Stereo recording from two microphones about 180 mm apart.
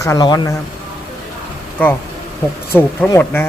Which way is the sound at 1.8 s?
10° left (ahead or behind).